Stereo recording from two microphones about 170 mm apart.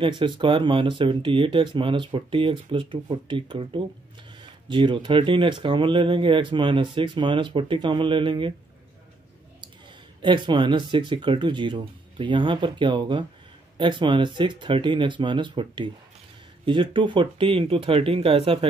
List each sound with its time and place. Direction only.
0.0 s speech: 30° right (ahead or behind)
10.2 s speech: 25° right (ahead or behind)